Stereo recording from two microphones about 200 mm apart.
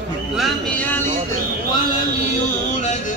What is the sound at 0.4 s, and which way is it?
Music, 10° left (ahead or behind).